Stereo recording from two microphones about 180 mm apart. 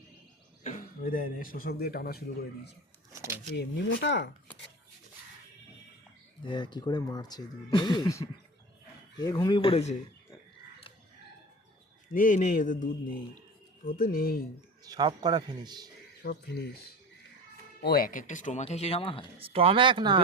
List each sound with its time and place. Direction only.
0.6 s a man's voice: 45° left (ahead or behind)
3.1 s speech: 15° right (ahead or behind)
3.5 s speech: 70° left (ahead or behind)
6.4 s speech: 25° left (ahead or behind)
12.1 s speech: 45° left (ahead or behind)
14.8 s speech: 25° right (ahead or behind)
16.2 s speech: 65° left (ahead or behind)
17.7 s speech: 60° left (ahead or behind); by 19.3 s 30° left (ahead or behind)
19.4 s speech: 30° right (ahead or behind)